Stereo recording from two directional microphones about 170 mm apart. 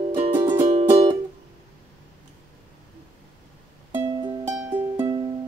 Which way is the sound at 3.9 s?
20° right (ahead or behind).